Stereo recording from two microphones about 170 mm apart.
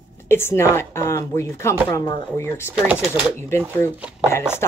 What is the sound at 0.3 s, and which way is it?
Speech, 15° left (ahead or behind).